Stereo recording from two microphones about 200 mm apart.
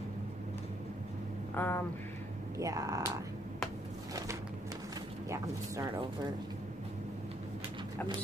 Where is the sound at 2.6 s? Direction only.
15° right (ahead or behind).